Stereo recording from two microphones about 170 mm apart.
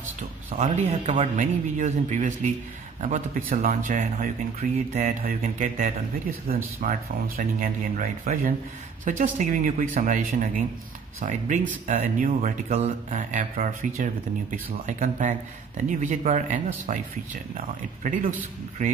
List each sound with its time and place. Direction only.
0.5 s speech: 45° right (ahead or behind)